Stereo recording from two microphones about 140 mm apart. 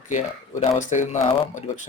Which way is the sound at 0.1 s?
60° left (ahead or behind).